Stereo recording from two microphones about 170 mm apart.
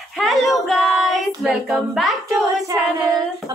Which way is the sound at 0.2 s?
Centre (ahead or behind).